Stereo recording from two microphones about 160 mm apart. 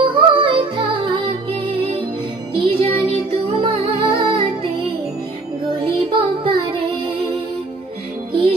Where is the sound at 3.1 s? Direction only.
35° right (ahead or behind).